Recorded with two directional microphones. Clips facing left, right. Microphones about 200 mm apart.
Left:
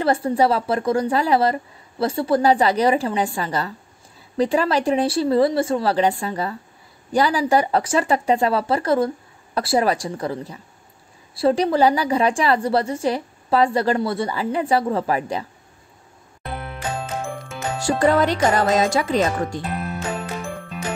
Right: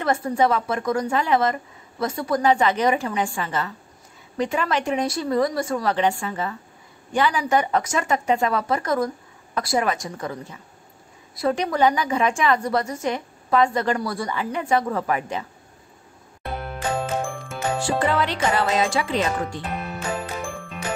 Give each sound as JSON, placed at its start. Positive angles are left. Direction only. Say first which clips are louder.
{"t": 0.0, "sound": "a woman's voice", "louder": "left 3 dB", "side_deg": 30}
{"t": 16.5, "sound": "music", "louder": "right 1 dB", "side_deg": 0}
{"t": 17.7, "sound": "a woman's voice", "louder": "left 6 dB", "side_deg": 40}
{"t": 19.7, "sound": "music", "louder": "left 3 dB", "side_deg": 0}